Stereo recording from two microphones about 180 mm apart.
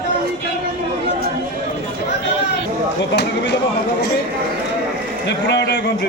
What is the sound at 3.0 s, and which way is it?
Speech, 70° left (ahead or behind).